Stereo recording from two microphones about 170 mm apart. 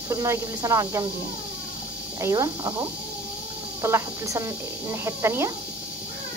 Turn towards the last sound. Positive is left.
turn(degrees=-15)  # may be behind; listen again after turning